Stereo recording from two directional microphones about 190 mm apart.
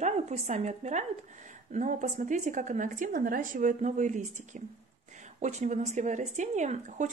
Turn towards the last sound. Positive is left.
turn(degrees=-40)  # may be behind; listen again after turning